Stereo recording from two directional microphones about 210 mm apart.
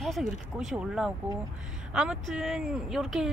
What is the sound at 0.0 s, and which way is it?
Speech, centre (ahead or behind).